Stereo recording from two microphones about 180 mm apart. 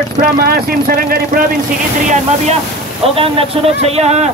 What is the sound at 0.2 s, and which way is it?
Speech, 55° right (ahead or behind).